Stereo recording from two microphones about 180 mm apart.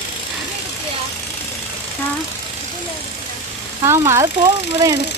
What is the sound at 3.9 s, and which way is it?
Speech, 15° right (ahead or behind).